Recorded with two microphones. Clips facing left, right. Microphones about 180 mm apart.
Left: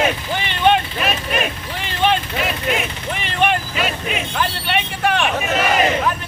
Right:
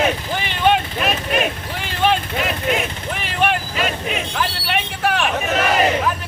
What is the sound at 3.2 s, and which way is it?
Vehicle, centre (ahead or behind).